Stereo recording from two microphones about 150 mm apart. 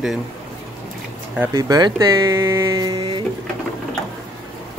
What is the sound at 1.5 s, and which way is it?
Speech, 25° right (ahead or behind).